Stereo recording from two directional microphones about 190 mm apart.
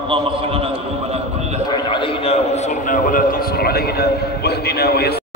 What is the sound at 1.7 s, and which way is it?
A man's voice, 25° left (ahead or behind).